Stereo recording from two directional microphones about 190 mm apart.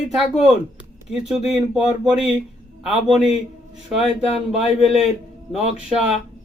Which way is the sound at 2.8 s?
5° right (ahead or behind).